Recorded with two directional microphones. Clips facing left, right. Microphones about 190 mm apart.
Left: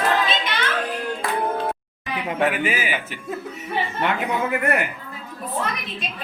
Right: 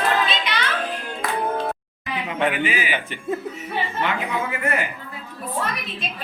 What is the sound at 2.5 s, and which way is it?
Speech, 45° left (ahead or behind).